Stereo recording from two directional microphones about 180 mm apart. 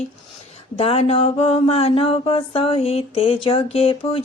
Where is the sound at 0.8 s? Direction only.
35° left (ahead or behind).